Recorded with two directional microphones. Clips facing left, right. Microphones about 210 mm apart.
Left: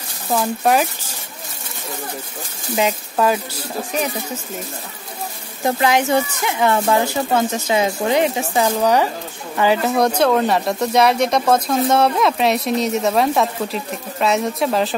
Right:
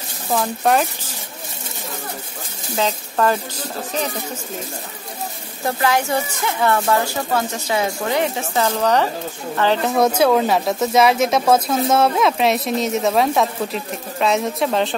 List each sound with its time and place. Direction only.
0.3 s speech: 5° left (ahead or behind)
2.7 s speech: 10° left (ahead or behind)
5.7 s speech: 20° left (ahead or behind); by 15.0 s centre (ahead or behind)